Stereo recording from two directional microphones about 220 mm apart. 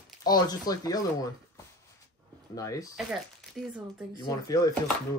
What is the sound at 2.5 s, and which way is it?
Speech, 15° left (ahead or behind).